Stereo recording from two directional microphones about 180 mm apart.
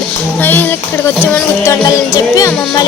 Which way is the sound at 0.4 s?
10° left (ahead or behind).